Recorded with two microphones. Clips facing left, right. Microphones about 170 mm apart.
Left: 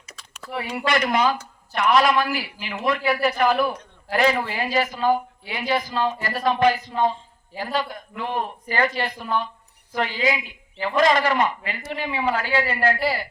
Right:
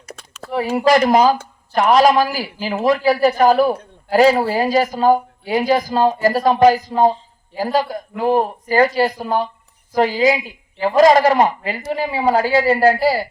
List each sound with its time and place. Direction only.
0.4 s speech: 35° right (ahead or behind)